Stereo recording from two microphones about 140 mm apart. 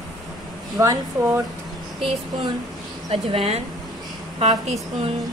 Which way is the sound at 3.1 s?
45° right (ahead or behind).